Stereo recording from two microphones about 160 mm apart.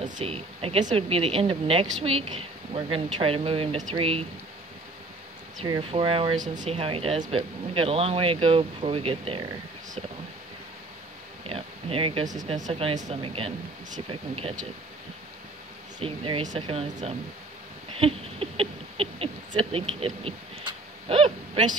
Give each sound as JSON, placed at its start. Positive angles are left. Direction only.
{"t": 0.1, "sound": "speech", "side_deg": -40}
{"t": 5.6, "sound": "speech", "side_deg": -35}
{"t": 6.4, "sound": "speech", "side_deg": -50}
{"t": 11.4, "sound": "a sound", "side_deg": -35}
{"t": 12.6, "sound": "speech", "side_deg": -35}
{"t": 16.0, "sound": "speech", "side_deg": -35}
{"t": 17.9, "sound": "rodents", "side_deg": -35}
{"t": 20.0, "sound": "owl", "side_deg": -35}